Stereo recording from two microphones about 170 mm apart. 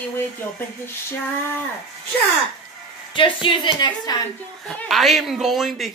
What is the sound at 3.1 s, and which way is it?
Speech, 30° left (ahead or behind).